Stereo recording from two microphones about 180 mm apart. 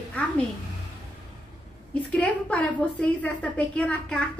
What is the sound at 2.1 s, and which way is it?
A woman's voice, 5° left (ahead or behind).